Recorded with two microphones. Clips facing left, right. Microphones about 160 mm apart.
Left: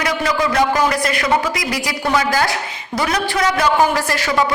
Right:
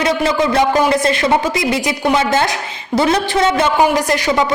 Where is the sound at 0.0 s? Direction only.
25° right (ahead or behind).